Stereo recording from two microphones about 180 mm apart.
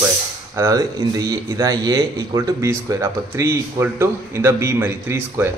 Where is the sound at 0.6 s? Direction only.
20° right (ahead or behind).